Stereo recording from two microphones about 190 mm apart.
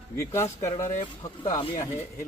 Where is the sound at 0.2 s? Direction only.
15° left (ahead or behind).